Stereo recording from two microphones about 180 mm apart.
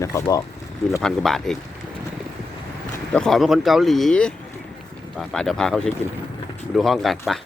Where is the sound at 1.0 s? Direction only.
Centre (ahead or behind).